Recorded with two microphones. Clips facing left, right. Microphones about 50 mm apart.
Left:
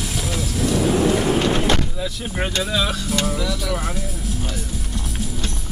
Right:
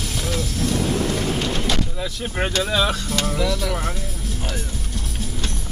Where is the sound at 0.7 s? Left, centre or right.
Centre.